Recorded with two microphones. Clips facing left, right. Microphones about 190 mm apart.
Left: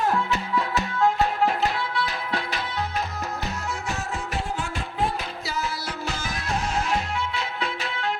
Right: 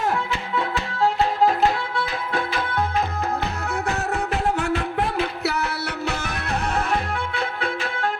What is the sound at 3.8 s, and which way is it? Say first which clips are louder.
Music: right 6 dB; 60° right (ahead or behind).